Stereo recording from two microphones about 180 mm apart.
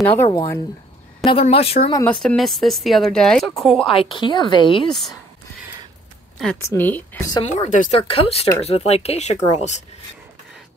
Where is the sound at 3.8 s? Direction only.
30° left (ahead or behind).